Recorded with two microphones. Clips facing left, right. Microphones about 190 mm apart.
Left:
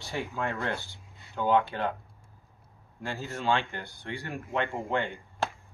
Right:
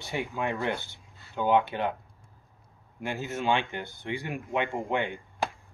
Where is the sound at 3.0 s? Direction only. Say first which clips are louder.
Right 3 dB; 20° right (ahead or behind).